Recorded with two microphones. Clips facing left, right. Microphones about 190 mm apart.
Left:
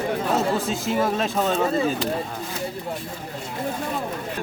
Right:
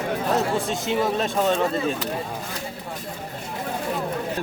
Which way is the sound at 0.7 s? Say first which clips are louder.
Even; centre (ahead or behind).